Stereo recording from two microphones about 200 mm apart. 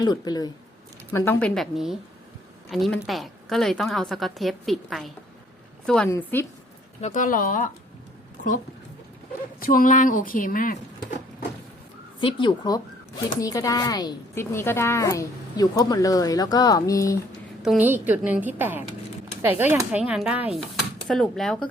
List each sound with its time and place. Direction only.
0.0 s a woman's voice: 20° left (ahead or behind); by 6.1 s 5° left (ahead or behind)
6.1 s speech: 15° left (ahead or behind)
7.0 s speech: 40° left (ahead or behind)
9.6 s speech: 45° left (ahead or behind)
12.2 s speech: 25° left (ahead or behind)
17.6 s a woman's voice: 5° right (ahead or behind)